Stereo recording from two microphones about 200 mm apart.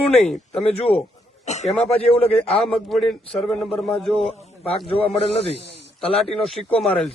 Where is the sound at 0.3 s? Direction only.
Centre (ahead or behind).